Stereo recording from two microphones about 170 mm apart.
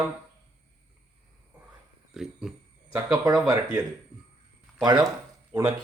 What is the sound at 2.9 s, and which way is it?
Speech, 20° right (ahead or behind).